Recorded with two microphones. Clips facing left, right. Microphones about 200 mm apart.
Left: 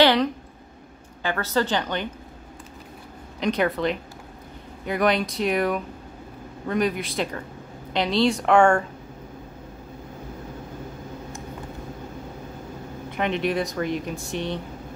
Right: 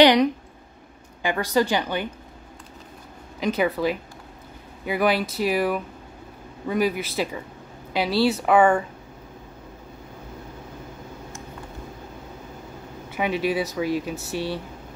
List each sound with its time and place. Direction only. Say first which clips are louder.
0.0 s a sound: right 3 dB; 15° right (ahead or behind)
1.2 s a woman's voice: right 2 dB; 15° right (ahead or behind)
3.3 s speech: even; 5° right (ahead or behind)
13.1 s speech: right 1 dB; 5° right (ahead or behind)